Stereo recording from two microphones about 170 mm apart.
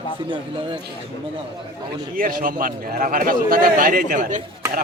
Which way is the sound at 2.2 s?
55° right (ahead or behind).